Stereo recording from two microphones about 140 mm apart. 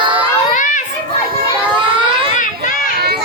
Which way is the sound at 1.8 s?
35° right (ahead or behind).